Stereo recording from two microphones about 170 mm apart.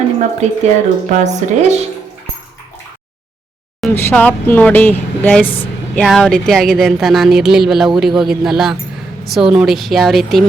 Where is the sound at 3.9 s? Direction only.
10° left (ahead or behind).